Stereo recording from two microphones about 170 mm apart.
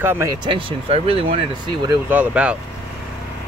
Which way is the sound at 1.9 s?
10° right (ahead or behind).